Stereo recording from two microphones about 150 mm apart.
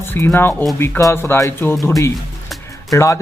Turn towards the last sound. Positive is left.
turn(degrees=20)  # may be behind; listen again after turning